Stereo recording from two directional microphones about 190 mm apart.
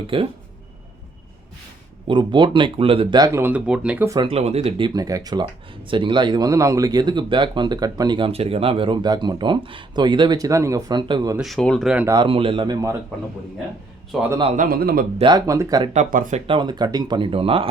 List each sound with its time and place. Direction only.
0.1 s speech: 30° right (ahead or behind)
2.0 s speech: 25° right (ahead or behind)
4.2 s speech: 30° right (ahead or behind)
4.9 s speech: 20° right (ahead or behind)
11.3 s speech: centre (ahead or behind)
12.0 s speech: 20° right (ahead or behind)
14.3 s speech: 25° right (ahead or behind)
14.5 s a man's voice: 50° right (ahead or behind)
15.2 s speech: 20° right (ahead or behind)
15.9 s speech: 40° right (ahead or behind)
16.5 s speech: 25° right (ahead or behind)